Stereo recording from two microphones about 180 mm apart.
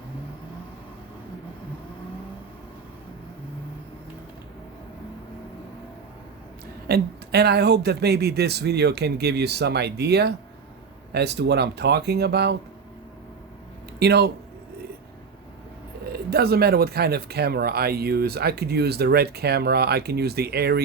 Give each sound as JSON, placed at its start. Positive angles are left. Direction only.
{"t": 6.8, "sound": "speech", "side_deg": -65}
{"t": 14.0, "sound": "speech", "side_deg": -65}
{"t": 16.1, "sound": "speech", "side_deg": -60}